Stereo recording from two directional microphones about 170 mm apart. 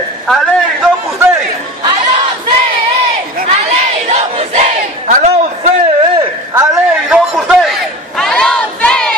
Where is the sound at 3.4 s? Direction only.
40° right (ahead or behind).